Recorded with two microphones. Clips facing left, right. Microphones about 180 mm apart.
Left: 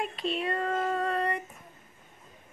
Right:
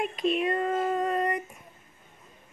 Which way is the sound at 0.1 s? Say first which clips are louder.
Right 5 dB; 30° left (ahead or behind).